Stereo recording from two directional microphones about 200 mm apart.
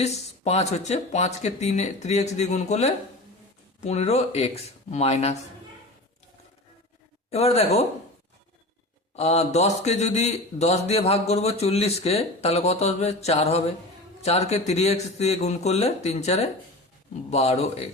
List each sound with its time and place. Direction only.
0.0 s a man's voice: 30° left (ahead or behind)
7.3 s a man's voice: 30° left (ahead or behind)
9.1 s a man's voice: 30° left (ahead or behind)